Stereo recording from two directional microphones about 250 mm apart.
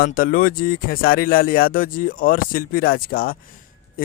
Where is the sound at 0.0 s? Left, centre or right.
Left.